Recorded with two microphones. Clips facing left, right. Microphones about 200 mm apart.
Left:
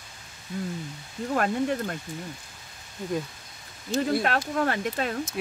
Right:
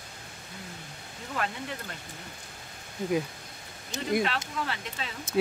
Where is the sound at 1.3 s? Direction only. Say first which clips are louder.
Left 9 dB; 50° left (ahead or behind).